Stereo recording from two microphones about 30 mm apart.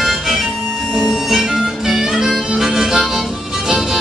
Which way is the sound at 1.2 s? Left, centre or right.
Centre.